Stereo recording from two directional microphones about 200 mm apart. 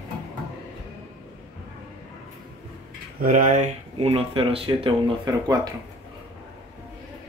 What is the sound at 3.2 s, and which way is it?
Speech, 45° right (ahead or behind).